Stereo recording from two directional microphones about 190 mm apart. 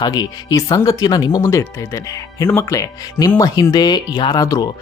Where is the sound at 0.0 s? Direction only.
20° left (ahead or behind).